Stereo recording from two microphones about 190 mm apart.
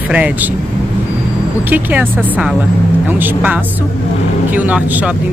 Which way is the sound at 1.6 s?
10° right (ahead or behind).